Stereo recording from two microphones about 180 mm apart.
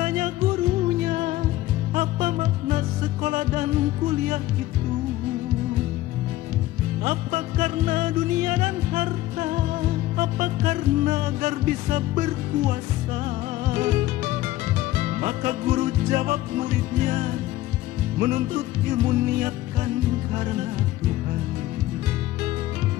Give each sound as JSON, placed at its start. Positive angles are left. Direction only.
{"t": 0.0, "sound": "music", "side_deg": -40}
{"t": 7.1, "sound": "music", "side_deg": -45}